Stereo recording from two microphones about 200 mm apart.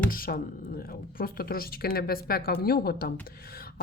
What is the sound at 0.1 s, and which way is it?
A woman's voice, 45° left (ahead or behind).